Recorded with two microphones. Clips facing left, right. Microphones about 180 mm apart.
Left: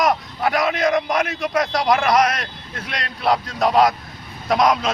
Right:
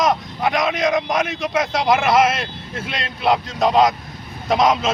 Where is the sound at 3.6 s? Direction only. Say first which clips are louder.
Even; centre (ahead or behind).